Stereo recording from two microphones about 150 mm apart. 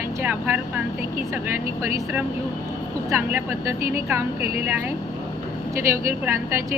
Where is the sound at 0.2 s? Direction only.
10° right (ahead or behind).